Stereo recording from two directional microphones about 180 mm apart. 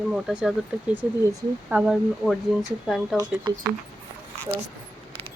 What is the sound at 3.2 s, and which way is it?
Speech, 20° right (ahead or behind).